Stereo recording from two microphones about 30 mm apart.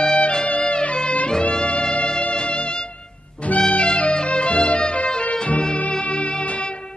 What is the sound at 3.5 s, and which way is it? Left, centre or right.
Music, left.